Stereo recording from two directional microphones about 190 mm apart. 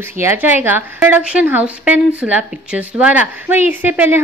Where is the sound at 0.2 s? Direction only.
10° right (ahead or behind).